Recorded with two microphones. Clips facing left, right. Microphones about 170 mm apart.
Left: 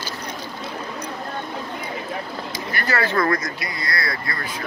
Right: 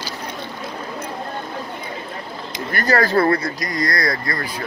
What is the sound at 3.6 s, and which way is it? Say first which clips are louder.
Speech: right 6 dB; 45° right (ahead or behind).